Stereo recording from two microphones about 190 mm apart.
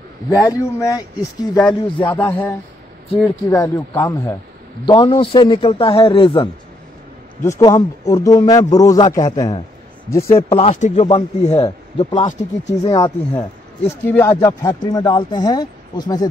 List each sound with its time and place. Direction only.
0.3 s speech: 15° left (ahead or behind)
2.0 s speech: 10° left (ahead or behind); by 6.5 s 30° left (ahead or behind)
7.4 s a man's voice: 15° left (ahead or behind)
10.3 s speech: 35° left (ahead or behind)
12.9 s speech: 20° left (ahead or behind)